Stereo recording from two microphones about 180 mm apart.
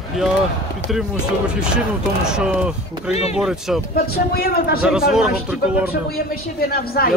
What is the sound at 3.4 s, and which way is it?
Speech, centre (ahead or behind).